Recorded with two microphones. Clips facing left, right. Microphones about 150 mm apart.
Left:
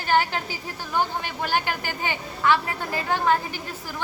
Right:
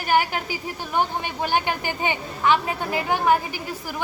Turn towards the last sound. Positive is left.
turn(degrees=-15)  # may be behind; listen again after turning